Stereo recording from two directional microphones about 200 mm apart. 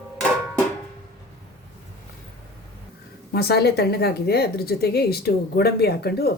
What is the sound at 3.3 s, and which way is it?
A woman's voice, 55° left (ahead or behind).